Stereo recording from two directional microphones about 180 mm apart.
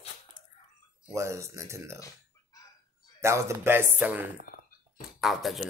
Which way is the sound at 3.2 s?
15° right (ahead or behind).